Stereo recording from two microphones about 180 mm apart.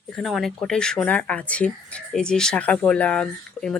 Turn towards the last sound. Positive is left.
turn(degrees=5)  # may be behind; listen again after turning